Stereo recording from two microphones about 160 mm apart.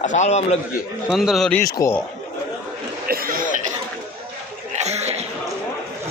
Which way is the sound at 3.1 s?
65° right (ahead or behind).